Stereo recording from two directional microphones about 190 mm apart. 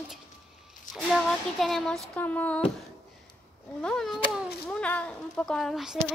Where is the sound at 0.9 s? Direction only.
Centre (ahead or behind).